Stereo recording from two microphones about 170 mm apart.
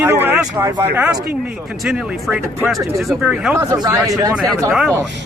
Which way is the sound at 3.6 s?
20° right (ahead or behind).